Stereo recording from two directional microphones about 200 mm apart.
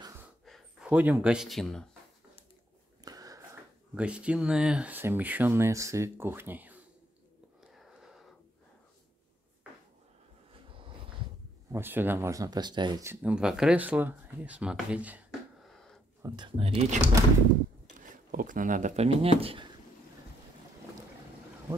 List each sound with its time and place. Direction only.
0.5 s speech: 5° right (ahead or behind)
3.0 s a sound: 20° right (ahead or behind)
3.9 s speech: 5° right (ahead or behind)
7.7 s wheeze: centre (ahead or behind)
11.7 s speech: 10° right (ahead or behind)
16.2 s speech: 20° right (ahead or behind)
18.1 s speech: 45° right (ahead or behind); by 19.7 s 30° right (ahead or behind)